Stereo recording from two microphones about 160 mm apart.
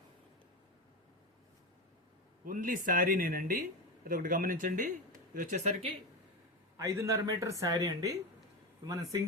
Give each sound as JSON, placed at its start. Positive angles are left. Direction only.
{"t": 2.4, "sound": "speech", "side_deg": -55}
{"t": 6.7, "sound": "a man's voice", "side_deg": -20}